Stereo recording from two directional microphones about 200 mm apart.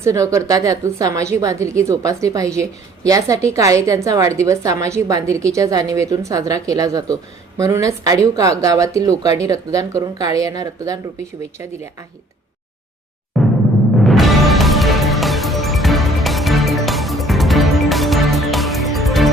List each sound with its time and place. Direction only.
0.0 s a woman's voice: 15° right (ahead or behind)
14.0 s music: centre (ahead or behind)